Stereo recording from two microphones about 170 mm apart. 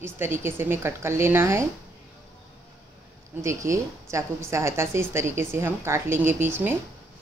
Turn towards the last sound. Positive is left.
turn(degrees=-15)  # may be behind; listen again after turning